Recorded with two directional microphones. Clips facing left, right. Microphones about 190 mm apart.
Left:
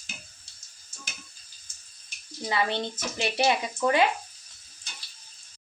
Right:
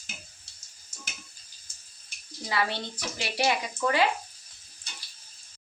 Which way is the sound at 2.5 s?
20° left (ahead or behind).